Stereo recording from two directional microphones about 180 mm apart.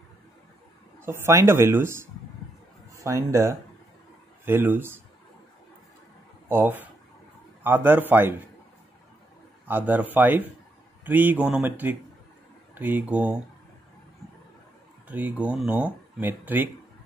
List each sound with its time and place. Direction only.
1.0 s speech: 15° right (ahead or behind)
6.5 s speech: 10° right (ahead or behind)
9.7 s speech: 10° right (ahead or behind)
15.0 s speech: 10° right (ahead or behind)